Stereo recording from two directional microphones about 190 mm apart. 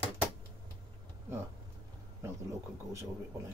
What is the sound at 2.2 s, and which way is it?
Speech, 15° right (ahead or behind).